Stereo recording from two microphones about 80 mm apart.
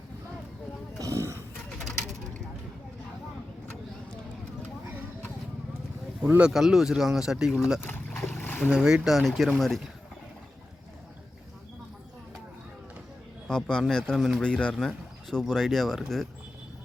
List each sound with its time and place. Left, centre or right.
0.9 s a sound: right
6.2 s speech: centre
6.5 s speech: centre
8.1 s boat: centre
8.4 s boat: left
8.7 s speech: centre
13.5 s a man's voice: centre